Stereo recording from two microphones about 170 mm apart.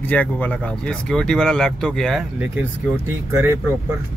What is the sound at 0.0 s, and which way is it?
Speech, 10° left (ahead or behind).